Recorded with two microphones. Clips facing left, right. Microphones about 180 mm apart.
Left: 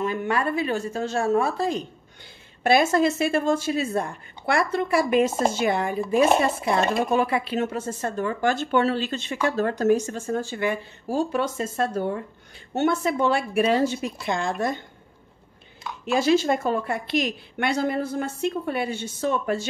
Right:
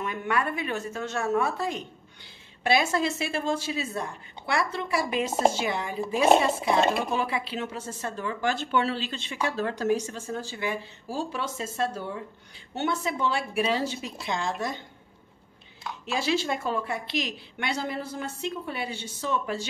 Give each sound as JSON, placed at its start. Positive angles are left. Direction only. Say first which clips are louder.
{"t": 0.0, "sound": "a woman's voice", "louder": "left 4 dB", "side_deg": 30}
{"t": 2.6, "sound": "speech", "louder": "left 5 dB", "side_deg": 50}
{"t": 16.2, "sound": "speech", "louder": "left 7 dB", "side_deg": 45}